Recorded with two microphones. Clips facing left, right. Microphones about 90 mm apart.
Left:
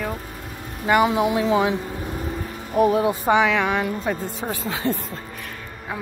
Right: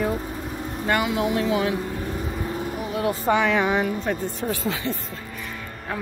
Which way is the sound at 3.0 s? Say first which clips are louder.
Left 2 dB; 15° left (ahead or behind).